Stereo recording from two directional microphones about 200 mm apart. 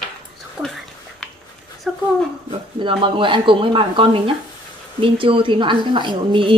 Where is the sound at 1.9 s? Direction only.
Centre (ahead or behind).